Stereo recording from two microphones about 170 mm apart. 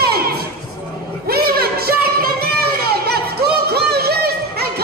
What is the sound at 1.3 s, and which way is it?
Music, 65° right (ahead or behind).